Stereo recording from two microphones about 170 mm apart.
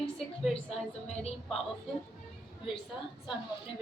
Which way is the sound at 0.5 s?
35° left (ahead or behind).